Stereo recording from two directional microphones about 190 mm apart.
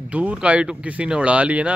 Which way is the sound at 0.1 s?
5° right (ahead or behind).